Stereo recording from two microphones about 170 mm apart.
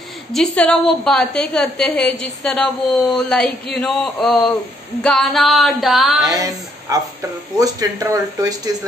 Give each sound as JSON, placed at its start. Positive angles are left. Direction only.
{"t": 0.3, "sound": "a woman's voice", "side_deg": 5}
{"t": 6.2, "sound": "speech", "side_deg": -20}